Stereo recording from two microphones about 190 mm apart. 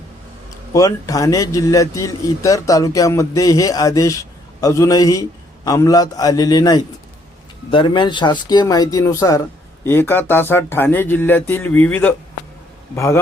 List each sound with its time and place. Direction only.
0.7 s a man's voice: 15° left (ahead or behind)